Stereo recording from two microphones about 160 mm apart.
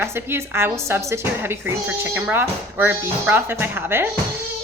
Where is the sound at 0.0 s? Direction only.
15° right (ahead or behind).